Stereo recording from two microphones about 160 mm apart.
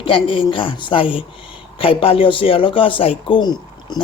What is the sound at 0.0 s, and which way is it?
Speech, 30° left (ahead or behind).